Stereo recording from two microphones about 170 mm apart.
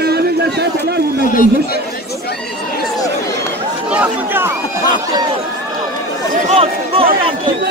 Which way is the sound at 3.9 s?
10° right (ahead or behind).